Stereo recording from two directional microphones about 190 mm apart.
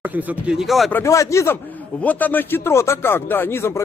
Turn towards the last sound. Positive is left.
turn(degrees=15)  # may be behind; listen again after turning